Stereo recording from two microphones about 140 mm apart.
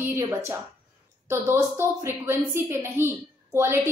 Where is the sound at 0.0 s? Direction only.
20° right (ahead or behind).